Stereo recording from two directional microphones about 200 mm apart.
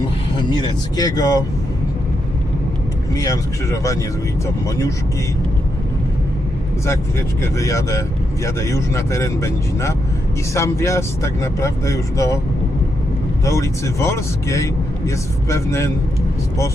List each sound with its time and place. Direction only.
0.3 s speech: 20° left (ahead or behind)
3.2 s speech: 15° left (ahead or behind)
6.8 s speech: 15° left (ahead or behind)
13.4 s speech: 15° left (ahead or behind)